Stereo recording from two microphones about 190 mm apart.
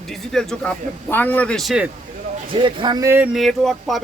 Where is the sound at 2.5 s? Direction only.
25° right (ahead or behind).